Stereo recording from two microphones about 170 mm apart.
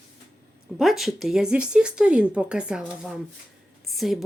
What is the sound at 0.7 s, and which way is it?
Speech, centre (ahead or behind).